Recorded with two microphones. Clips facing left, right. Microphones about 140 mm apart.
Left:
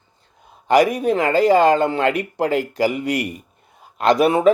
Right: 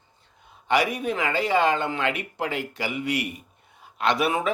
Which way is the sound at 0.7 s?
40° left (ahead or behind).